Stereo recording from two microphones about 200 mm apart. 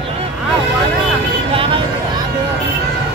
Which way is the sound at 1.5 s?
25° right (ahead or behind).